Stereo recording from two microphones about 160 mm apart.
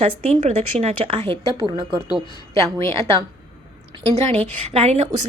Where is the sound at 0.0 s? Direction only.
40° right (ahead or behind).